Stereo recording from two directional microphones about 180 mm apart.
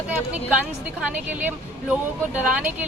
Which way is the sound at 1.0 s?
10° right (ahead or behind).